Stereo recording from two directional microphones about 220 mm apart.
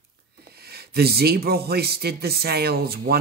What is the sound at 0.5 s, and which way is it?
Speech, 45° right (ahead or behind).